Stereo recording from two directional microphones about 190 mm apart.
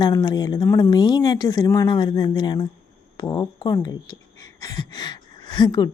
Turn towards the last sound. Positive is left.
turn(degrees=20)  # may be behind; listen again after turning